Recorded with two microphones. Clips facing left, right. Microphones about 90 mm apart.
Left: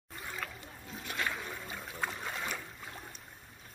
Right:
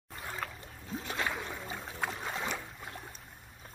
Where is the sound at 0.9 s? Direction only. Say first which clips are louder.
Right 2 dB; 25° right (ahead or behind).